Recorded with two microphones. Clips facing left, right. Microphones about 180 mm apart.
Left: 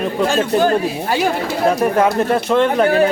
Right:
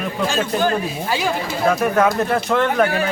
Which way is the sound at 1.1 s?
50° left (ahead or behind).